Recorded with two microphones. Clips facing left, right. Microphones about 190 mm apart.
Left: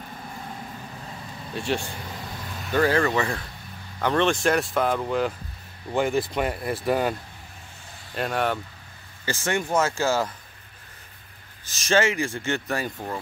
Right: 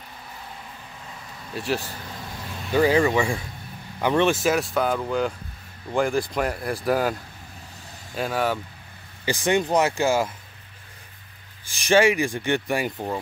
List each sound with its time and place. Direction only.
1.5 s speech: centre (ahead or behind)
2.7 s speech: 15° right (ahead or behind)
9.2 s speech: 15° right (ahead or behind)
11.6 s speech: 15° right (ahead or behind)